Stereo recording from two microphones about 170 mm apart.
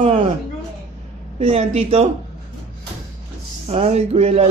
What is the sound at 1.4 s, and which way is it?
Speech, 35° right (ahead or behind).